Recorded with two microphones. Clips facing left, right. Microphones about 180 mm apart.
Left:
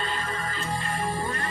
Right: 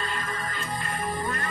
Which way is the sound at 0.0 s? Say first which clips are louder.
Left 1 dB; 25° left (ahead or behind).